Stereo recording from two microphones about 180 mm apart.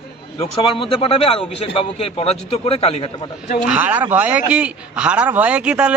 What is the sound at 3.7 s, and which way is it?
A man's voice, 10° right (ahead or behind).